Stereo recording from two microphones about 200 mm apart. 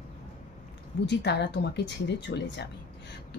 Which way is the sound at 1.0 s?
60° left (ahead or behind).